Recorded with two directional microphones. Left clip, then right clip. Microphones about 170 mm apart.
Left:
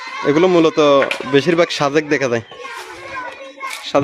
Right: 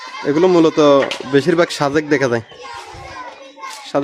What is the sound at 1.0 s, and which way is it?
Speech, 20° left (ahead or behind).